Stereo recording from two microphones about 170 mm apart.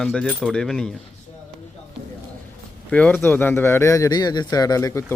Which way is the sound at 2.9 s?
5° left (ahead or behind).